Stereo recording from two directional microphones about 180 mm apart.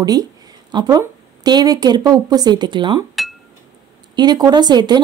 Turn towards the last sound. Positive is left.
turn(degrees=-25)  # may be behind; listen again after turning